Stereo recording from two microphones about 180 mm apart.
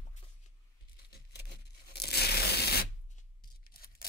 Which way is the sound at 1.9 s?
60° left (ahead or behind).